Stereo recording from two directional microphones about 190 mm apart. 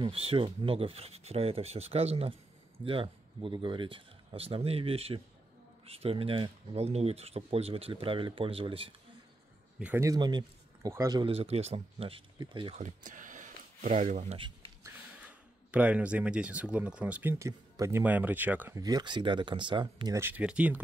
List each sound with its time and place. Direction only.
0.0 s speech: 30° right (ahead or behind)
9.8 s speech: 10° right (ahead or behind)
12.7 s speech: 40° right (ahead or behind)
14.8 s speech: 5° right (ahead or behind)
18.8 s speech: 20° right (ahead or behind)